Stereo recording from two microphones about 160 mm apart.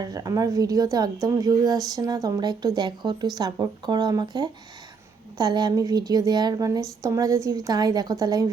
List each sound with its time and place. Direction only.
0.0 s a woman's voice: 25° right (ahead or behind)